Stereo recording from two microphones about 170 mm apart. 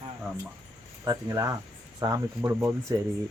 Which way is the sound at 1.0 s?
20° right (ahead or behind).